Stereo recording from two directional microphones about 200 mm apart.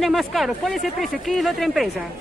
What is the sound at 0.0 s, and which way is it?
A woman's voice, centre (ahead or behind).